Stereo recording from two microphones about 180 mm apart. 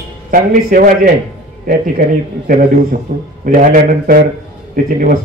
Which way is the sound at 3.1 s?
45° right (ahead or behind).